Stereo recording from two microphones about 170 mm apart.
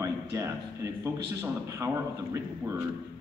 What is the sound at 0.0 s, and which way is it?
Speech, 20° right (ahead or behind).